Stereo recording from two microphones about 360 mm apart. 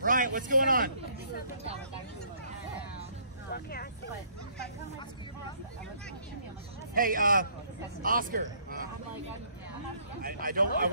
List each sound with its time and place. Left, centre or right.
0.0 s a man's voice: right
3.4 s speech: left
6.9 s speech: right
10.2 s speech: right